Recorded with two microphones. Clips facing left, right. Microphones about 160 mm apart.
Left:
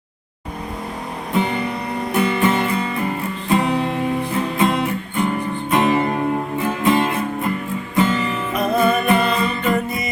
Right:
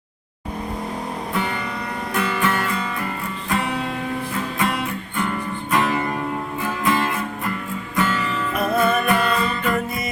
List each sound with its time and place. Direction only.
1.3 s music: 20° left (ahead or behind)
4.5 s guitar: 25° left (ahead or behind)
5.7 s music: 20° left (ahead or behind)